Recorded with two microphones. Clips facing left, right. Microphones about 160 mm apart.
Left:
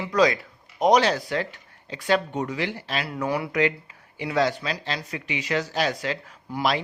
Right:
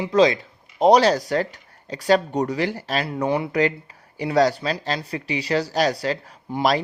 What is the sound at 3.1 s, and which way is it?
Speech, 25° right (ahead or behind).